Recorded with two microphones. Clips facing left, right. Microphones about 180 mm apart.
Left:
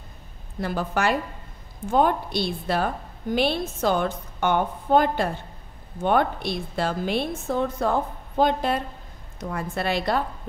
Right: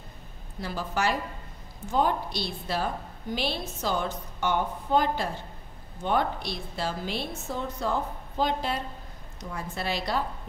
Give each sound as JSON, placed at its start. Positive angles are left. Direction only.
{"t": 0.6, "sound": "a woman's voice", "side_deg": 55}